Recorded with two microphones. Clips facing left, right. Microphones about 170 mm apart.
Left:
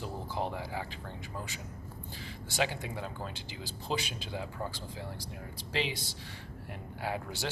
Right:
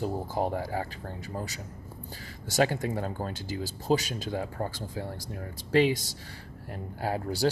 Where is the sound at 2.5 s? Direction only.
45° right (ahead or behind).